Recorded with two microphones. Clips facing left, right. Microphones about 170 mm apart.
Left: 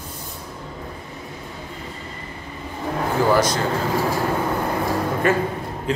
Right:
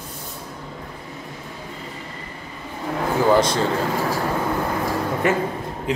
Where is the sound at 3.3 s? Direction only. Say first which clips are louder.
Right 1 dB; 25° right (ahead or behind).